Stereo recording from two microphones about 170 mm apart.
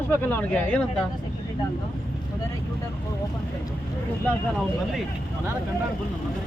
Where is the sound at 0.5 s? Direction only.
5° left (ahead or behind).